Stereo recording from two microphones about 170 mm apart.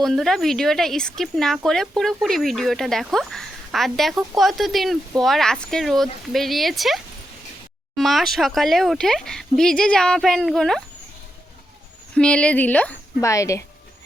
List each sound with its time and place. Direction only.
0.0 s speech: centre (ahead or behind)
12.1 s speech: 5° left (ahead or behind)